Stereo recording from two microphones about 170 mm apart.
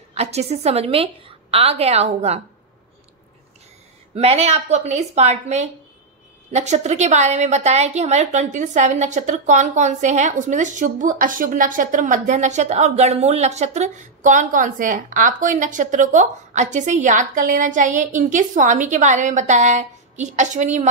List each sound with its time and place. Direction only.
0.1 s a woman's voice: 40° right (ahead or behind)
4.1 s a woman's voice: 35° right (ahead or behind)